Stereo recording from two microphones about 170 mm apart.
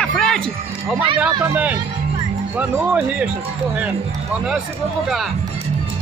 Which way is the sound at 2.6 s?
10° right (ahead or behind).